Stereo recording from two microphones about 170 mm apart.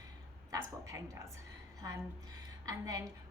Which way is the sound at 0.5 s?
15° right (ahead or behind).